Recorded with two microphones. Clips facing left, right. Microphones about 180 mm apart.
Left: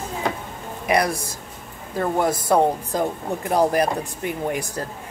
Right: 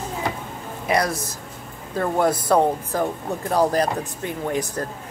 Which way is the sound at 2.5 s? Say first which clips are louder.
Even; 15° left (ahead or behind).